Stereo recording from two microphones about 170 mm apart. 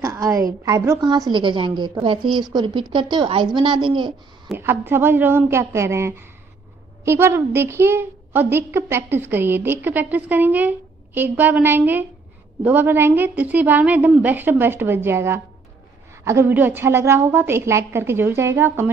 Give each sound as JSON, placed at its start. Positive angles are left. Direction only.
{"t": 0.0, "sound": "a sound", "side_deg": -20}
{"t": 0.7, "sound": "a woman's voice", "side_deg": -15}
{"t": 4.6, "sound": "a woman's voice", "side_deg": -10}